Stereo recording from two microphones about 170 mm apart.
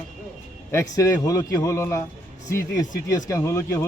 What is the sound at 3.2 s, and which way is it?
Speech, 15° left (ahead or behind).